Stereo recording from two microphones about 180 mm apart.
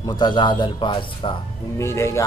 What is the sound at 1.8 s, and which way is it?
Speech, 15° left (ahead or behind).